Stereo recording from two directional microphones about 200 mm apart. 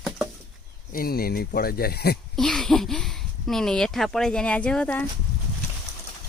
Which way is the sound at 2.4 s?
Centre (ahead or behind).